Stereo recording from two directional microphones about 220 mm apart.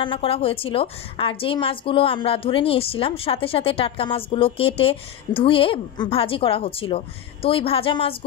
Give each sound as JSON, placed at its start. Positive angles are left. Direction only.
{"t": 0.0, "sound": "a woman's voice", "side_deg": 25}